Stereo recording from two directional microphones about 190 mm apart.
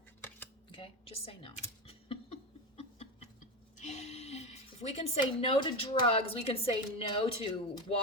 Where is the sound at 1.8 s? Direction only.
30° left (ahead or behind).